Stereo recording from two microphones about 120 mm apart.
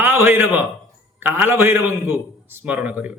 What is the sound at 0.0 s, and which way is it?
A man's voice, 20° right (ahead or behind).